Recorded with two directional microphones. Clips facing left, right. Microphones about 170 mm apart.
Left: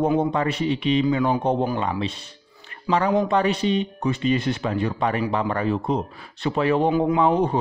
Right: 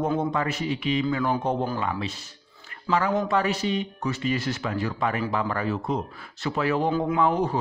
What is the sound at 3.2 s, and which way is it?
A man's voice, 25° left (ahead or behind).